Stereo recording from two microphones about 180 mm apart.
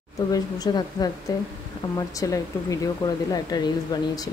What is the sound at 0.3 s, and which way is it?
Speech, 20° left (ahead or behind).